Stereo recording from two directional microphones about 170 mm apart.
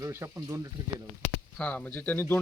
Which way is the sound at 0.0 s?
20° right (ahead or behind).